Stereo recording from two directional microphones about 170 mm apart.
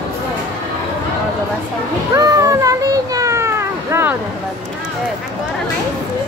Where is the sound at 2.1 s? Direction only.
20° right (ahead or behind).